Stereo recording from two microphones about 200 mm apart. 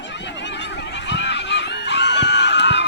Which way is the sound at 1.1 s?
60° left (ahead or behind).